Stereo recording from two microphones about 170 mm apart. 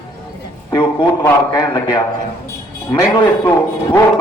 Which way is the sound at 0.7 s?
30° left (ahead or behind).